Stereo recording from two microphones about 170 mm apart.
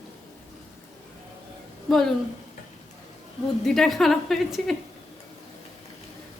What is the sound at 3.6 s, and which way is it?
A woman's voice, centre (ahead or behind).